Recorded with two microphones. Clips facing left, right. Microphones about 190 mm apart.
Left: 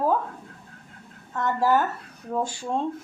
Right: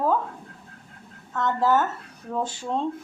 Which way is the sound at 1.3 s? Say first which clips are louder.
Even; 15° left (ahead or behind).